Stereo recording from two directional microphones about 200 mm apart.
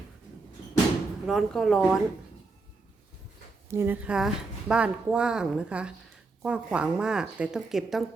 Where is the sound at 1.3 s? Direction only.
Centre (ahead or behind).